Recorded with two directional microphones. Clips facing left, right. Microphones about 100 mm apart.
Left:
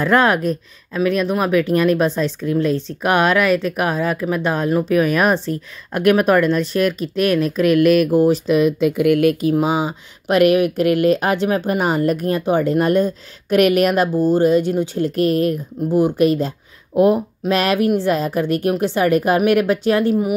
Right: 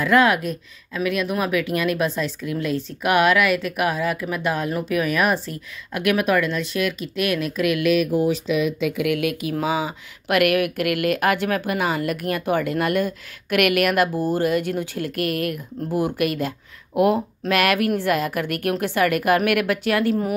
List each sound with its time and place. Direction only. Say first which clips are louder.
0.0 s speech: left 2 dB; 35° left (ahead or behind)